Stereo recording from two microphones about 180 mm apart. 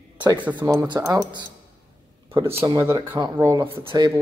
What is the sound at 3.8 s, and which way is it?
Speech, 25° right (ahead or behind).